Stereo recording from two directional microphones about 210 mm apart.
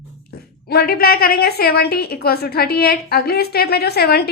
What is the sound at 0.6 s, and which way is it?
A woman's voice, 50° left (ahead or behind).